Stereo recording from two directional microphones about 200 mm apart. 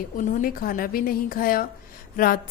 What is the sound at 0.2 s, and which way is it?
A woman's voice, 45° left (ahead or behind).